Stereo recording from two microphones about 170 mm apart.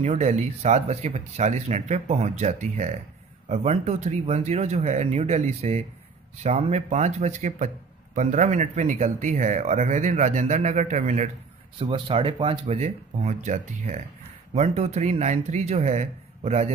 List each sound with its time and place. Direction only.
0.0 s a man's voice: 40° right (ahead or behind)
11.8 s speech: 30° right (ahead or behind)